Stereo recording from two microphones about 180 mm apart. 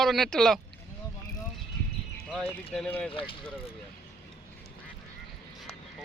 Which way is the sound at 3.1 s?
30° left (ahead or behind).